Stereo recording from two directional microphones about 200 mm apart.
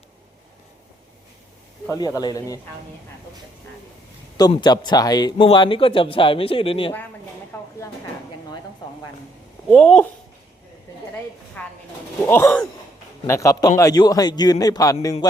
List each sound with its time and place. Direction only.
1.9 s speech: 20° left (ahead or behind)
4.4 s a man's voice: 20° left (ahead or behind)
7.5 s a sound: 10° left (ahead or behind)
9.6 s speech: 5° left (ahead or behind)
11.6 s a man's voice: 10° left (ahead or behind)
15.2 s music: 20° left (ahead or behind)